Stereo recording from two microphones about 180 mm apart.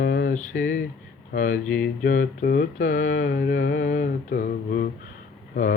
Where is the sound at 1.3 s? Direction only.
50° left (ahead or behind).